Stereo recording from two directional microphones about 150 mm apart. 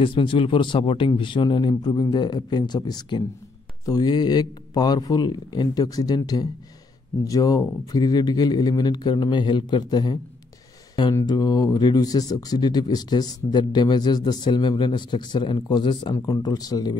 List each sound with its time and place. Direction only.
0.0 s speech: 35° left (ahead or behind)
11.1 s speech: 25° left (ahead or behind)